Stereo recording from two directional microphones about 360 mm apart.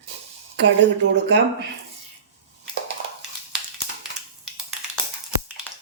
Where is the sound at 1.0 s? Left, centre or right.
Right.